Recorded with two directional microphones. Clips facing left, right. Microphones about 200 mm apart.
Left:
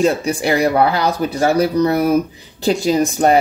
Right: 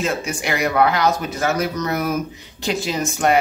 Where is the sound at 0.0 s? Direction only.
35° left (ahead or behind).